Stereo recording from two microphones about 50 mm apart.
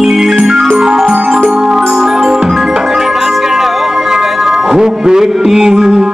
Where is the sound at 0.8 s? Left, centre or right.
Centre.